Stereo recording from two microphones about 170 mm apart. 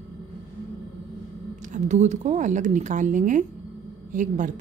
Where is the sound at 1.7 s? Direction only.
45° right (ahead or behind).